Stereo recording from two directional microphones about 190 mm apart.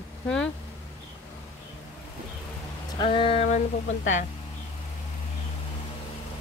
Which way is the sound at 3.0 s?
25° left (ahead or behind).